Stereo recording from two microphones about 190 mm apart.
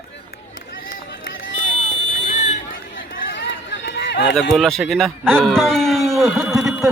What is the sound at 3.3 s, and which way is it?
Run, 70° left (ahead or behind).